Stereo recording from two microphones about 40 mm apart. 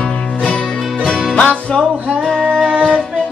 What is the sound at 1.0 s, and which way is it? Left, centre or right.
Music, left.